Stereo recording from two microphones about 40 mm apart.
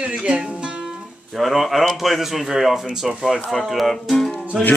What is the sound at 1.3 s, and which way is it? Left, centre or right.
Speech, centre.